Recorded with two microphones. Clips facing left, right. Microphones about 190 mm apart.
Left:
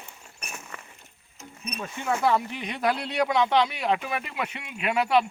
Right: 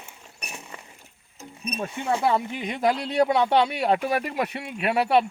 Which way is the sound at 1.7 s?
30° right (ahead or behind).